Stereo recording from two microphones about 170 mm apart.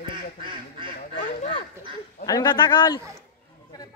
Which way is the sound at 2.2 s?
25° left (ahead or behind).